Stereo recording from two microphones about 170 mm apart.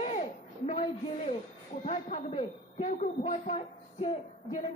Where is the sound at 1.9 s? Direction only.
40° left (ahead or behind).